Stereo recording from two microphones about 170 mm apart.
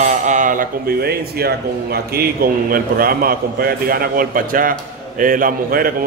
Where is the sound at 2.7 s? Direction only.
60° right (ahead or behind).